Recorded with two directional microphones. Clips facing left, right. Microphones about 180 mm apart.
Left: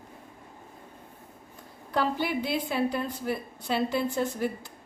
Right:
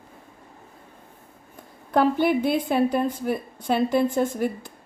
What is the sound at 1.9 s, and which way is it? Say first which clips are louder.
A woman's voice: right 8 dB; 55° right (ahead or behind).